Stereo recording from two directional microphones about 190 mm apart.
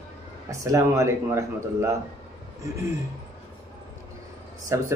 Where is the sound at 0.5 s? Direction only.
15° right (ahead or behind).